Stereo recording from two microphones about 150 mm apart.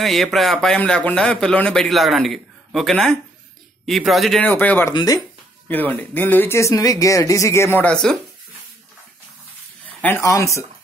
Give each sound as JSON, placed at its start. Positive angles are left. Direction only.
{"t": 0.0, "sound": "speech", "side_deg": 0}
{"t": 4.4, "sound": "speech", "side_deg": 10}
{"t": 4.9, "sound": "speech", "side_deg": 25}
{"t": 5.7, "sound": "speech", "side_deg": 10}
{"t": 10.0, "sound": "speech", "side_deg": 15}